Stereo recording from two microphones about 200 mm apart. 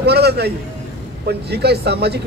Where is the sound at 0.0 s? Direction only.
55° right (ahead or behind).